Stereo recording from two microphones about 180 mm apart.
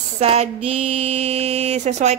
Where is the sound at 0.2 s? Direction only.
35° right (ahead or behind).